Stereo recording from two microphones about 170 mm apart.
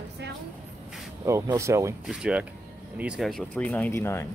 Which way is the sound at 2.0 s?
5° right (ahead or behind).